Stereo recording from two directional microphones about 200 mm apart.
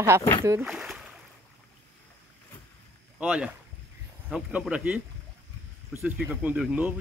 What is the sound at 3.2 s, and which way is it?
Speech, 5° right (ahead or behind).